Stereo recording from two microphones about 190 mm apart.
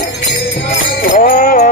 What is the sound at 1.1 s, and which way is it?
Music, 50° left (ahead or behind).